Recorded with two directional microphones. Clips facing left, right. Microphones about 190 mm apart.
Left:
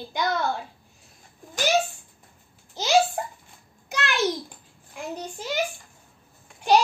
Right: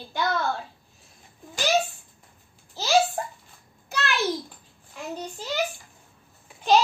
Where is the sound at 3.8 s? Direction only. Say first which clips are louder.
Even; 15° left (ahead or behind).